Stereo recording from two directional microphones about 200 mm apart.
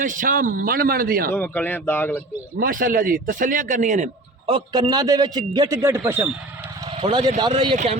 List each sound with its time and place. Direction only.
0.0 s a man's voice: 40° right (ahead or behind)
1.3 s speech: 10° left (ahead or behind)
2.6 s a man's voice: 45° right (ahead or behind)
4.4 s a man's voice: 20° right (ahead or behind)
6.9 s speech: 25° right (ahead or behind)